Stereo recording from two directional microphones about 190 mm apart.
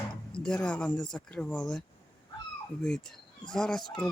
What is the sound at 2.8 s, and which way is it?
Speech, 5° left (ahead or behind).